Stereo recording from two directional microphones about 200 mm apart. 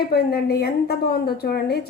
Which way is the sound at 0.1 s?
50° left (ahead or behind).